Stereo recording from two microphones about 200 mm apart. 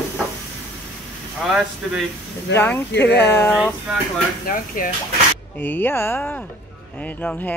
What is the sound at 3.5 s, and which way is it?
Speech, 5° right (ahead or behind).